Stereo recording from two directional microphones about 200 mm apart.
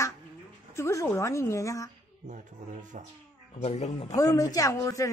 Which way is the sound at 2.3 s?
40° right (ahead or behind).